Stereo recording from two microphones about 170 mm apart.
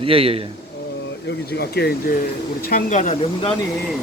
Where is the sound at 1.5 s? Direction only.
70° left (ahead or behind).